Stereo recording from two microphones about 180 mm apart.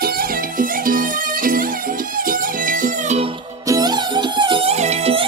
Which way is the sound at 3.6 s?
20° right (ahead or behind).